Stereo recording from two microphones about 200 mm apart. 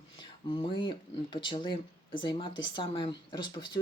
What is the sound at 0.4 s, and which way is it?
Speech, 25° left (ahead or behind).